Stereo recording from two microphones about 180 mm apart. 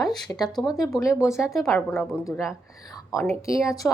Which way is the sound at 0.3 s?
20° left (ahead or behind).